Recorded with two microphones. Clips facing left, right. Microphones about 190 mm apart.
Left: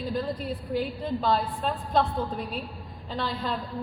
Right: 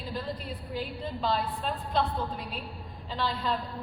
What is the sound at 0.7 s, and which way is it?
A woman's voice, 45° left (ahead or behind).